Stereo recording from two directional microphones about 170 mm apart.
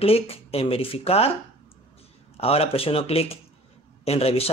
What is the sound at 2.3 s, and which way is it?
Speech, 35° left (ahead or behind).